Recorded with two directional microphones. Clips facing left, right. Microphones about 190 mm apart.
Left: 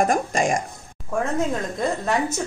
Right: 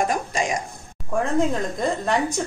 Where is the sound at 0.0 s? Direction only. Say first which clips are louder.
Left 3 dB; 50° left (ahead or behind).